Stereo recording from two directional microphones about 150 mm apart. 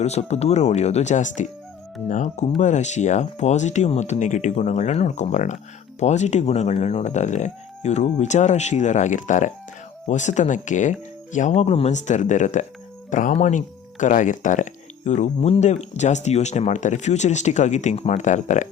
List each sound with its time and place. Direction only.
0.0 s speech: 45° left (ahead or behind)